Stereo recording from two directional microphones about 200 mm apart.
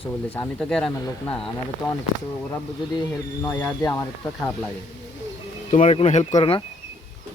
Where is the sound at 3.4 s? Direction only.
10° left (ahead or behind).